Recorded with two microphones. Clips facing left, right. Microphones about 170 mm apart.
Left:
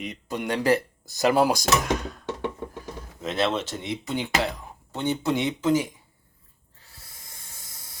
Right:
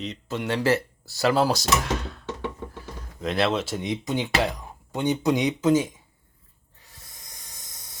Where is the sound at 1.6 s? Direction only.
45° left (ahead or behind).